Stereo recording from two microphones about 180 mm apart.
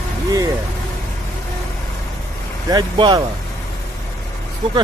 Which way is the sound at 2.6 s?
25° right (ahead or behind).